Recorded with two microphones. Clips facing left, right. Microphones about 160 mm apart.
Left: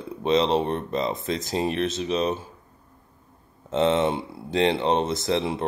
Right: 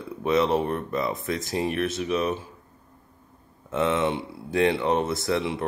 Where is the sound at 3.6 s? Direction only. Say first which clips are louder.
Left 3 dB; 25° left (ahead or behind).